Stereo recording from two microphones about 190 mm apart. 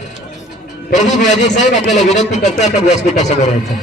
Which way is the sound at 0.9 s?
40° left (ahead or behind).